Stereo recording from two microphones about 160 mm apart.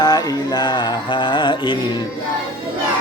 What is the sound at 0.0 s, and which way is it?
Music, 25° left (ahead or behind).